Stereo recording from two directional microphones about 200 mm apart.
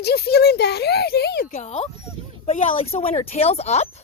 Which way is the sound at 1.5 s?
35° left (ahead or behind).